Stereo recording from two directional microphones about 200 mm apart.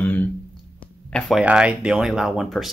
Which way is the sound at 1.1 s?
5° right (ahead or behind).